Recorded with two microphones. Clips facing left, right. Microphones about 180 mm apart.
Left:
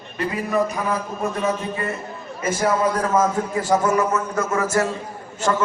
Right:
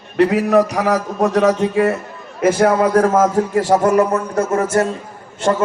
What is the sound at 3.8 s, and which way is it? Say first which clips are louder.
Speech: right 6 dB; 60° right (ahead or behind).